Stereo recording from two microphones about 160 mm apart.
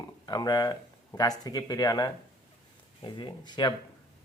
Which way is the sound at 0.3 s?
25° left (ahead or behind).